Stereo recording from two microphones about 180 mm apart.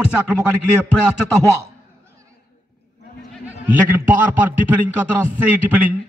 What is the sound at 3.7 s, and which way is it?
Speech, 10° right (ahead or behind).